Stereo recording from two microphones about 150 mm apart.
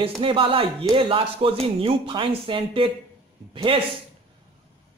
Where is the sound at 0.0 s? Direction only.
35° right (ahead or behind).